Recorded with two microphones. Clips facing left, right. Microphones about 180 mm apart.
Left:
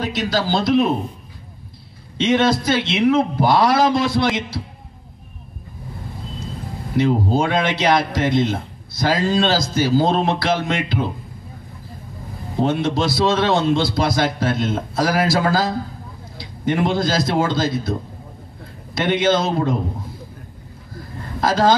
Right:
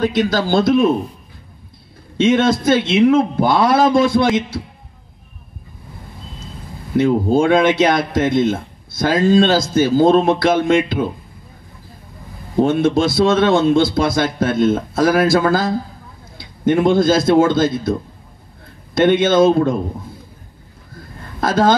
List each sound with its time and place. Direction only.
0.0 s a man's voice: 50° right (ahead or behind)
2.1 s a man's voice: 50° right (ahead or behind)
7.0 s a man's voice: 50° right (ahead or behind)
12.6 s a man's voice: 50° right (ahead or behind)
18.9 s a man's voice: 50° right (ahead or behind)
21.4 s a man's voice: 50° right (ahead or behind)